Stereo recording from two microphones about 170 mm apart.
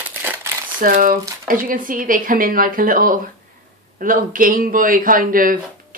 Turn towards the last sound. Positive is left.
turn(degrees=-55)  # may be behind; listen again after turning